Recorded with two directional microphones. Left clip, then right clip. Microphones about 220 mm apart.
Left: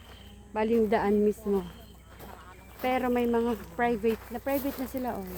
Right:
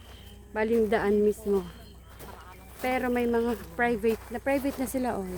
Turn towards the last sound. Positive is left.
turn(degrees=-35)  # may be behind; listen again after turning